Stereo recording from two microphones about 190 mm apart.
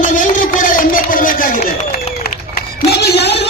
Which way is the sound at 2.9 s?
60° left (ahead or behind).